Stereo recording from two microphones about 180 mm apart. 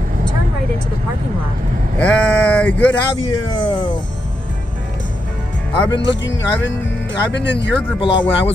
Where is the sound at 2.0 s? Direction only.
5° left (ahead or behind).